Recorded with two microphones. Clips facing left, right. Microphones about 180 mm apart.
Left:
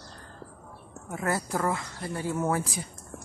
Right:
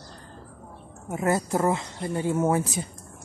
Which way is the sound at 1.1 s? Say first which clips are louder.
Right 5 dB; 20° right (ahead or behind).